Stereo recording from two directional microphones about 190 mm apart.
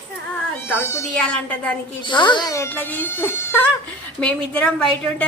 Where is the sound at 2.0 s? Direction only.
25° left (ahead or behind).